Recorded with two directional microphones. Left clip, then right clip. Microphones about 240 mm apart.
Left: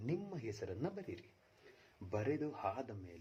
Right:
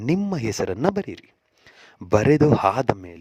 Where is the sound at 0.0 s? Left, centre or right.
Right.